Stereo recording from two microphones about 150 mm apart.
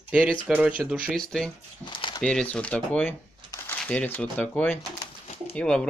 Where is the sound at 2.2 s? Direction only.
5° left (ahead or behind).